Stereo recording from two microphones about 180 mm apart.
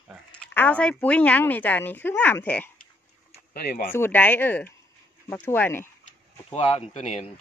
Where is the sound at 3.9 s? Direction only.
10° left (ahead or behind).